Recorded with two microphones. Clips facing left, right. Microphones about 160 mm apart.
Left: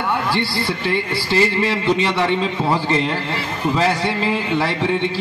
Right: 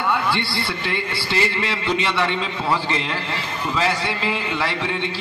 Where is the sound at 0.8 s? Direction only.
45° left (ahead or behind).